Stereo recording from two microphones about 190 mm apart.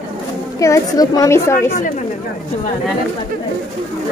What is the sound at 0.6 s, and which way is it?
A woman's voice, 15° left (ahead or behind).